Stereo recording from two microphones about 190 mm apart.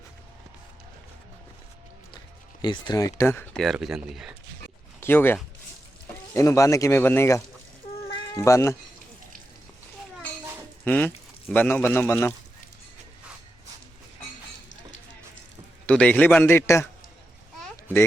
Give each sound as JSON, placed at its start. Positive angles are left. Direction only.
{"t": 2.6, "sound": "speech", "side_deg": 25}
{"t": 4.9, "sound": "speech", "side_deg": 10}
{"t": 10.8, "sound": "speech", "side_deg": 10}
{"t": 15.9, "sound": "speech", "side_deg": 5}